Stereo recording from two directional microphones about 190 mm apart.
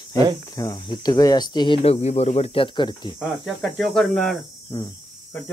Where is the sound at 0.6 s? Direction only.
20° left (ahead or behind).